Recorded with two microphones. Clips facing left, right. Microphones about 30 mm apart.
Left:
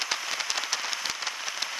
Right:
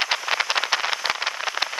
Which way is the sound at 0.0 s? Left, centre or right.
Right.